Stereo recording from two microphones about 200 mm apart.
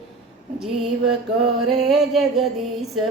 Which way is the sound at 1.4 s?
Centre (ahead or behind).